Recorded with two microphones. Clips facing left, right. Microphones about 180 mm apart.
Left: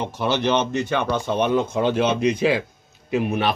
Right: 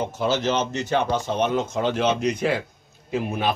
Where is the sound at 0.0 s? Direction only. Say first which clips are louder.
Left 1 dB; 65° left (ahead or behind).